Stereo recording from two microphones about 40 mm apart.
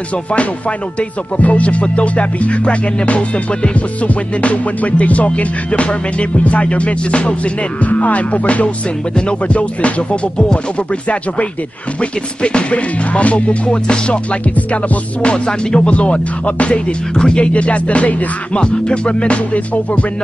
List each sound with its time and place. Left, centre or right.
0.3 s music: left
12.0 s music: left
17.1 s music: left